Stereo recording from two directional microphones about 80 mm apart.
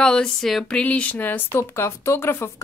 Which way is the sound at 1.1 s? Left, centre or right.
Left.